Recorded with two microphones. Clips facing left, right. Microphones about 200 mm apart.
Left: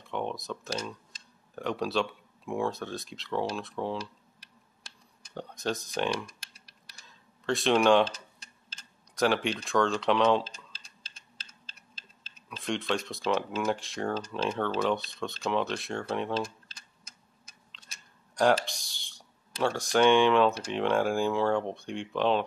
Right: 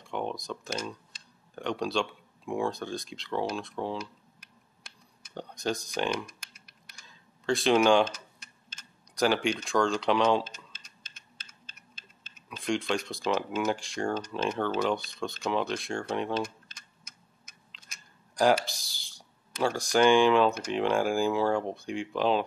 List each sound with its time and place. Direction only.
0.0 s speech: centre (ahead or behind)
5.3 s speech: centre (ahead or behind)
6.5 s a sound: 35° left (ahead or behind)
7.1 s a sound: centre (ahead or behind)
8.4 s tick-tock: 35° left (ahead or behind)
9.1 s speech: centre (ahead or behind)
10.4 s typing: 30° left (ahead or behind)
12.4 s speech: centre (ahead or behind)
16.6 s tick-tock: 30° left (ahead or behind)
18.3 s speech: centre (ahead or behind)